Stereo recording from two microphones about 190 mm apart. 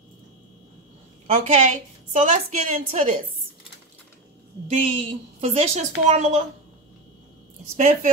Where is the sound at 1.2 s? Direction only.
40° right (ahead or behind).